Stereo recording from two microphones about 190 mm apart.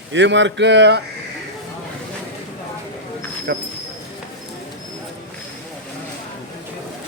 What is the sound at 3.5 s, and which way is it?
Speech, 50° right (ahead or behind).